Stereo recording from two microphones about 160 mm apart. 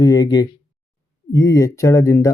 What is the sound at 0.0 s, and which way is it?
Speech, 25° left (ahead or behind).